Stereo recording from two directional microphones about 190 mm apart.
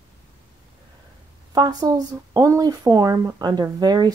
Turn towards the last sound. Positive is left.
turn(degrees=-20)  # may be behind; listen again after turning